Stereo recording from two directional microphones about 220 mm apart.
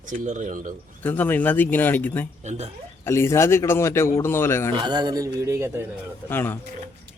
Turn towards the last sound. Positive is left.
turn(degrees=10)  # may be behind; listen again after turning